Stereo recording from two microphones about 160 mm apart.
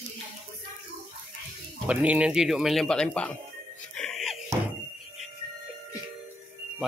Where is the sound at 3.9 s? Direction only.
5° left (ahead or behind).